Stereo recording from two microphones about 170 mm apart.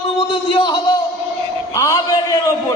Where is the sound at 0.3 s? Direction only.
30° left (ahead or behind).